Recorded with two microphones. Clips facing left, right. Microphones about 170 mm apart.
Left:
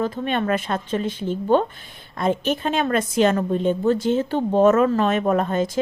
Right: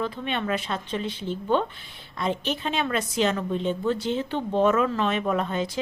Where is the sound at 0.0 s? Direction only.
45° left (ahead or behind).